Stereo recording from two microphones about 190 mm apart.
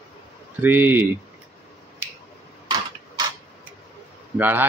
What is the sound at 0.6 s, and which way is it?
Speech, 10° right (ahead or behind).